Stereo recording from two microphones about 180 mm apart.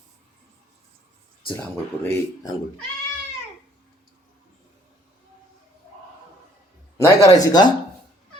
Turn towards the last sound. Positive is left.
turn(degrees=20)  # may be behind; listen again after turning